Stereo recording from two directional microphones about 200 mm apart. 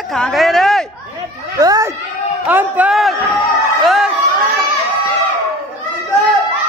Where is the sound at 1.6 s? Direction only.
15° right (ahead or behind); by 4.1 s centre (ahead or behind).